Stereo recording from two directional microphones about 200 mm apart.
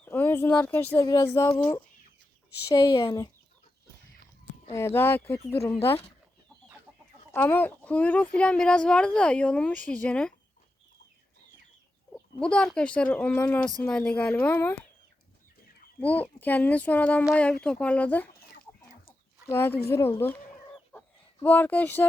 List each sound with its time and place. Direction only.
0.0 s speech: 10° left (ahead or behind)
4.7 s speech: 15° left (ahead or behind)
7.3 s speech: 10° left (ahead or behind)
12.1 s speech: 5° left (ahead or behind)
16.0 s speech: 5° left (ahead or behind)
19.5 s speech: 10° left (ahead or behind)
20.9 s fowl: 10° left (ahead or behind)
21.4 s speech: 10° left (ahead or behind)